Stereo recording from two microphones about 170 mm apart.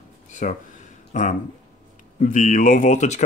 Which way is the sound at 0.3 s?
45° left (ahead or behind).